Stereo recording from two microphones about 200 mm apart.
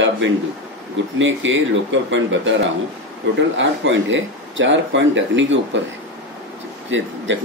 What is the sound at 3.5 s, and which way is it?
Speech, 70° right (ahead or behind).